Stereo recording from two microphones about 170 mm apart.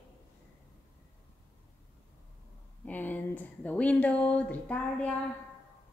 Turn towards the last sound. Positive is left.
turn(degrees=10)  # may be behind; listen again after turning